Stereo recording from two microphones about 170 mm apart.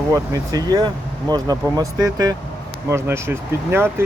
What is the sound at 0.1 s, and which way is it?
Speech, 20° right (ahead or behind).